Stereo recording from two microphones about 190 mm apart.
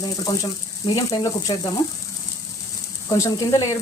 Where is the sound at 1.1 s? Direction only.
20° left (ahead or behind).